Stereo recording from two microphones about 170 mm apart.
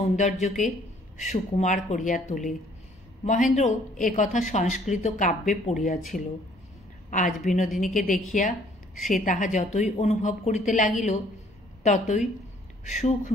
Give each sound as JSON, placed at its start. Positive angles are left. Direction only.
{"t": 0.0, "sound": "speech", "side_deg": 45}
{"t": 7.1, "sound": "a woman's voice", "side_deg": 50}